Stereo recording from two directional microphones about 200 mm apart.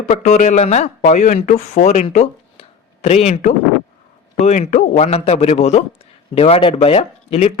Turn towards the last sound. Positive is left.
turn(degrees=30)  # may be behind; listen again after turning